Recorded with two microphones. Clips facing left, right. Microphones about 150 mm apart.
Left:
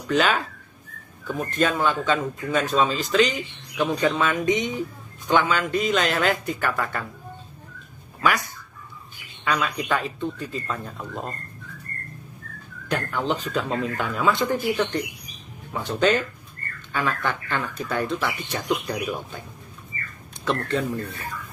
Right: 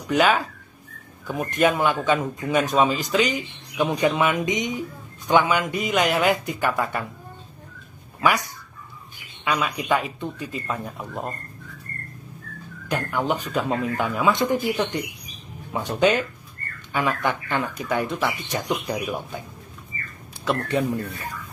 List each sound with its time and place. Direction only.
0.1 s a man's voice: 10° right (ahead or behind)
8.2 s a man's voice: 15° right (ahead or behind)
12.8 s a man's voice: 10° right (ahead or behind)
20.4 s a man's voice: 15° right (ahead or behind)